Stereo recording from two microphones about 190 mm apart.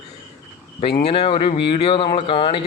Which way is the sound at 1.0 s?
30° left (ahead or behind).